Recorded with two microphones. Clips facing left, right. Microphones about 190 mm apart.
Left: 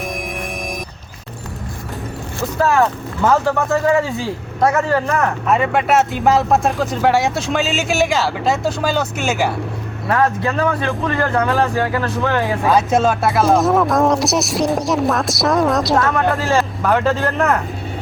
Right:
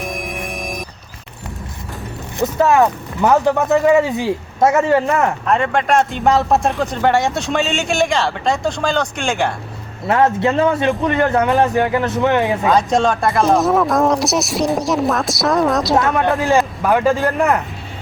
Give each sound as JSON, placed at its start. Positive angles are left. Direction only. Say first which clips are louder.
{"t": 0.0, "sound": "scary music", "louder": "even", "side_deg": 0}
{"t": 2.4, "sound": "speech", "louder": "right 2 dB", "side_deg": -20}
{"t": 5.5, "sound": "speech", "louder": "left 2 dB", "side_deg": 5}
{"t": 10.1, "sound": "speech", "louder": "right 3 dB", "side_deg": -25}
{"t": 12.6, "sound": "speech", "louder": "left 3 dB", "side_deg": 5}
{"t": 16.0, "sound": "speech", "louder": "right 1 dB", "side_deg": -15}